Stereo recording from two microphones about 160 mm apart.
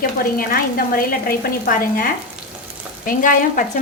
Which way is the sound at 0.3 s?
65° left (ahead or behind).